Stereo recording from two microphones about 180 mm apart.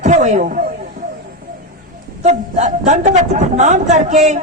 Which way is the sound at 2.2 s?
40° right (ahead or behind).